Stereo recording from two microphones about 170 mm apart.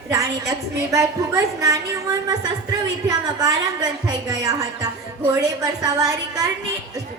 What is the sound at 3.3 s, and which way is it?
A woman's voice, 25° right (ahead or behind).